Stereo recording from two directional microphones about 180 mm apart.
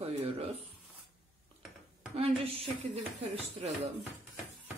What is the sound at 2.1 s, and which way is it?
Speech, 30° right (ahead or behind).